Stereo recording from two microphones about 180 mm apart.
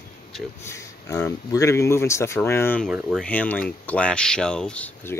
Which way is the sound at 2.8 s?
Centre (ahead or behind).